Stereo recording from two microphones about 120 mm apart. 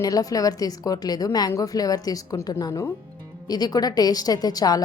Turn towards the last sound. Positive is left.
turn(degrees=30)  # may be behind; listen again after turning